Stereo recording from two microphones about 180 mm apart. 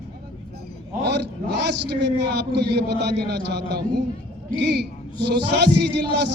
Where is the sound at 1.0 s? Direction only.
70° right (ahead or behind).